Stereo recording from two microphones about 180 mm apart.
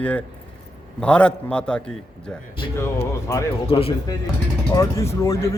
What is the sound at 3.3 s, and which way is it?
Speech, 15° left (ahead or behind).